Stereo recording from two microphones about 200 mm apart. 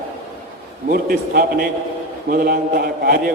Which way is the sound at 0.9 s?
50° right (ahead or behind).